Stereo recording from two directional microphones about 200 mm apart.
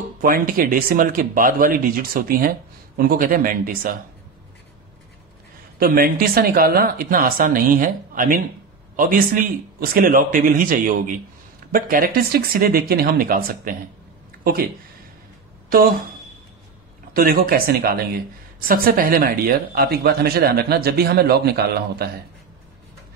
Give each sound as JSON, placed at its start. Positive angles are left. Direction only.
{"t": 0.2, "sound": "speech", "side_deg": -45}
{"t": 5.8, "sound": "speech", "side_deg": -45}
{"t": 15.7, "sound": "speech", "side_deg": -45}
{"t": 17.1, "sound": "speech", "side_deg": -50}